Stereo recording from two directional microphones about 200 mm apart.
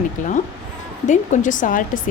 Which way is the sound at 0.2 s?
40° left (ahead or behind).